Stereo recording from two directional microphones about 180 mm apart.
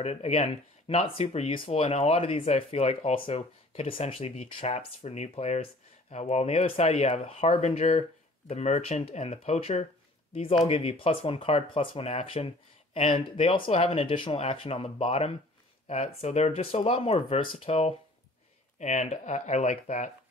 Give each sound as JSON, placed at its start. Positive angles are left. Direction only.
{"t": 0.0, "sound": "speech", "side_deg": 35}